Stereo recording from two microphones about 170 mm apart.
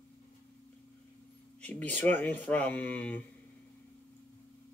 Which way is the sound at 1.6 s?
10° left (ahead or behind).